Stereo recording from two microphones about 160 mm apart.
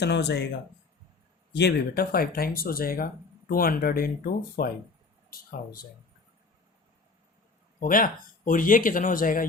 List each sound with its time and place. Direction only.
0.0 s speech: 90° left
1.5 s speech: 80° left
7.8 s speech: 60° left (ahead or behind)